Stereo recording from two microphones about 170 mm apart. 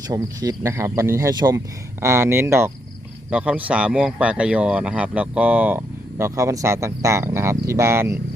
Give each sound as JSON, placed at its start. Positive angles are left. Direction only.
{"t": 0.1, "sound": "speech", "side_deg": -20}